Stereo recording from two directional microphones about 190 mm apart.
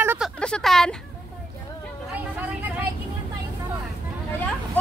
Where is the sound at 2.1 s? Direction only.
10° right (ahead or behind).